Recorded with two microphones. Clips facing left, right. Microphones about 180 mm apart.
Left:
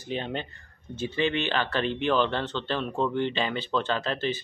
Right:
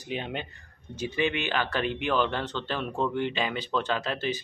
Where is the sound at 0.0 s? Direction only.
10° right (ahead or behind).